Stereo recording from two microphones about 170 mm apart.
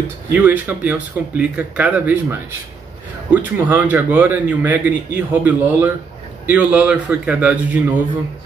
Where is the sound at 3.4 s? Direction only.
10° right (ahead or behind).